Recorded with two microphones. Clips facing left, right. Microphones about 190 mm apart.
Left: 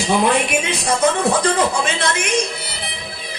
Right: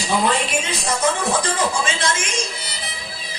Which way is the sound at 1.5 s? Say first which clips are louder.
Left 3 dB; 60° left (ahead or behind).